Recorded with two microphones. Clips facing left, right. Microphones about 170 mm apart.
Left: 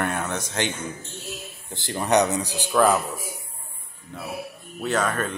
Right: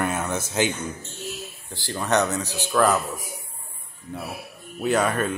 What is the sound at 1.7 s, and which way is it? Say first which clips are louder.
Speech: left 2 dB; 20° left (ahead or behind).